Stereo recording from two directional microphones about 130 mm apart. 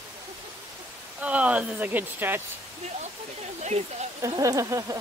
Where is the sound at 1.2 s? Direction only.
10° right (ahead or behind).